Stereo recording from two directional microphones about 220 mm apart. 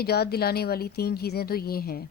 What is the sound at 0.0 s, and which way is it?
A woman's voice, 45° left (ahead or behind).